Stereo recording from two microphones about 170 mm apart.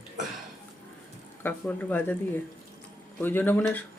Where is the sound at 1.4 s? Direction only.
10° left (ahead or behind).